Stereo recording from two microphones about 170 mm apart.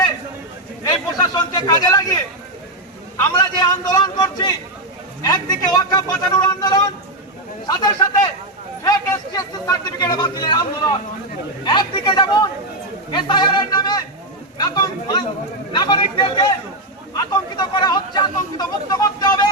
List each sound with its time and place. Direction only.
0.9 s a sound: 25° left (ahead or behind)
3.2 s speech: 20° left (ahead or behind)
11.6 s speech: 25° left (ahead or behind)